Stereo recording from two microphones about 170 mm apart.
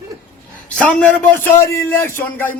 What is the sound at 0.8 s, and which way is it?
Speech, 5° left (ahead or behind).